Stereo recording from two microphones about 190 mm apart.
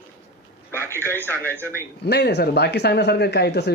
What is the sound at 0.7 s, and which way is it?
Speech, 10° left (ahead or behind).